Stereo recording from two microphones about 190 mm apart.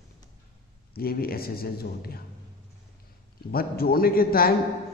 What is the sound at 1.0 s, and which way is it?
A man's voice, 55° left (ahead or behind).